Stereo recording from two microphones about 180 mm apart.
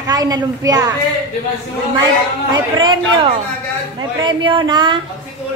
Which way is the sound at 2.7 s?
25° right (ahead or behind).